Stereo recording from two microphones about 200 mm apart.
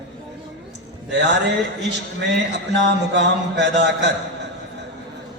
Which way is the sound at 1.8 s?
60° right (ahead or behind).